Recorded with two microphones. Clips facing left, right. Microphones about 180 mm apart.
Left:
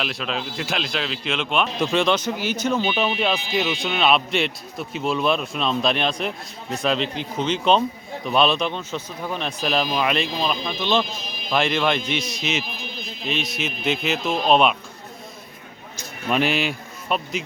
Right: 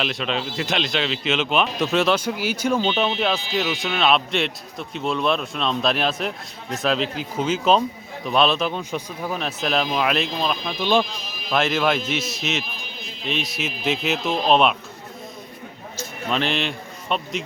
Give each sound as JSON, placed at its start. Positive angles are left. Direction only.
{"t": 0.0, "sound": "a man's voice", "side_deg": 0}
{"t": 2.8, "sound": "a man's voice", "side_deg": 10}
{"t": 3.4, "sound": "speech", "side_deg": 15}
{"t": 3.7, "sound": "a man's voice", "side_deg": 0}
{"t": 8.8, "sound": "a man's voice", "side_deg": -15}
{"t": 10.8, "sound": "a man's voice", "side_deg": -10}
{"t": 16.0, "sound": "speech", "side_deg": 10}